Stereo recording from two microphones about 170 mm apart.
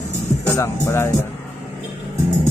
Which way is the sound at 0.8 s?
15° left (ahead or behind).